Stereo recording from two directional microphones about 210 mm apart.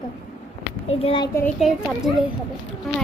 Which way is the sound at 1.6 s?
Centre (ahead or behind).